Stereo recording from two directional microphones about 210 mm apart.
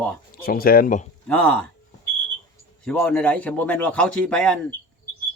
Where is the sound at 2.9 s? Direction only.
5° left (ahead or behind).